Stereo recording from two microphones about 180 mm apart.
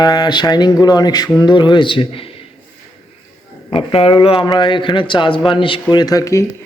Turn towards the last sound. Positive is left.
turn(degrees=15)  # may be behind; listen again after turning